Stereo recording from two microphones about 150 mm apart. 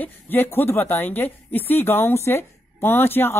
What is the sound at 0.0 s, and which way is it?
A woman's voice, 15° left (ahead or behind).